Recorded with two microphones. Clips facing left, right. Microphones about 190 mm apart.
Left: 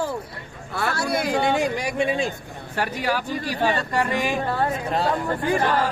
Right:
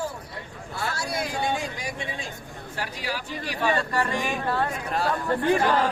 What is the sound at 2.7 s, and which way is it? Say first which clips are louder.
Speech: left 8 dB; 60° left (ahead or behind).